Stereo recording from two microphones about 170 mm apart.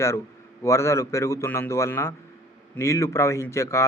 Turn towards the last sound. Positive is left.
turn(degrees=15)  # may be behind; listen again after turning